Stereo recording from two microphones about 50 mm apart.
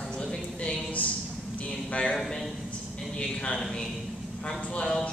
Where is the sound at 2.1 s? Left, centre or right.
Centre.